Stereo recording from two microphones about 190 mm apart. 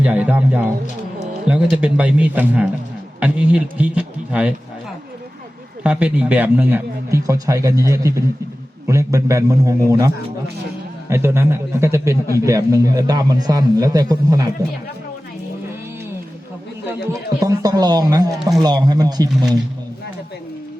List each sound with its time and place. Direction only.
0.0 s speech: 5° right (ahead or behind)
5.8 s speech: 5° right (ahead or behind)
11.1 s speech: 10° right (ahead or behind)
16.9 s speech: 20° right (ahead or behind)